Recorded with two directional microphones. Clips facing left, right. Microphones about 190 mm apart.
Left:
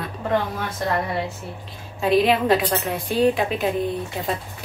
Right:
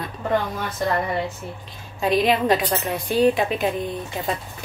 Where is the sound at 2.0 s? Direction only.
Centre (ahead or behind).